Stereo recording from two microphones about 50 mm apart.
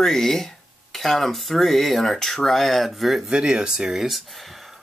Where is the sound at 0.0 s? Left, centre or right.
Centre.